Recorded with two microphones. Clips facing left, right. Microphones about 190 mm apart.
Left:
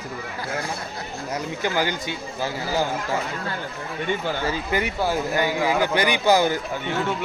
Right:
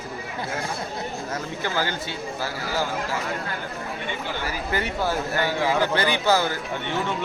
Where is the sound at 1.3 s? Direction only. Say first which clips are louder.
Left 4 dB; 15° left (ahead or behind).